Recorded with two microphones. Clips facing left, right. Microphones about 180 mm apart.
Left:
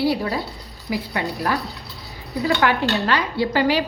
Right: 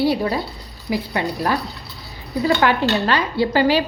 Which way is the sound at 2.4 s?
35° right (ahead or behind).